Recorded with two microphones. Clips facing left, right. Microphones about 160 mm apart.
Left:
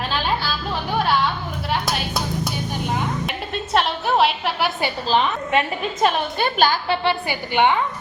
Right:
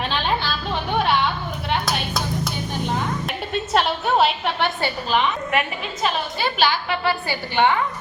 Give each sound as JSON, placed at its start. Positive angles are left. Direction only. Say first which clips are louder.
{"t": 0.1, "sound": "music", "louder": "even", "side_deg": 5}
{"t": 1.7, "sound": "a sound", "louder": "even", "side_deg": 0}
{"t": 3.2, "sound": "music", "louder": "right 1 dB", "side_deg": 0}
{"t": 5.0, "sound": "a woman's voice", "louder": "left 2 dB", "side_deg": 30}
{"t": 6.0, "sound": "a woman's voice", "louder": "left 3 dB", "side_deg": 50}
{"t": 6.8, "sound": "a woman's voice", "louder": "left 2 dB", "side_deg": 30}